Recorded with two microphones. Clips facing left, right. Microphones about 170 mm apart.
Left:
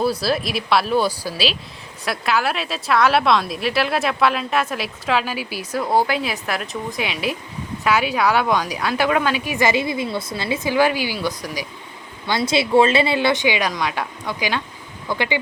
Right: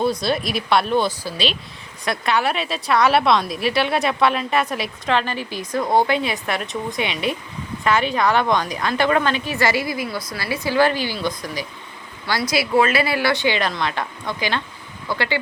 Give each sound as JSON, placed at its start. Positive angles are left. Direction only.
{"t": 0.0, "sound": "a woman's voice", "side_deg": 5}
{"t": 12.2, "sound": "a woman's voice", "side_deg": 20}